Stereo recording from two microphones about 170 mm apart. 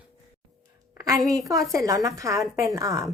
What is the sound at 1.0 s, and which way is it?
A woman's voice, 20° right (ahead or behind).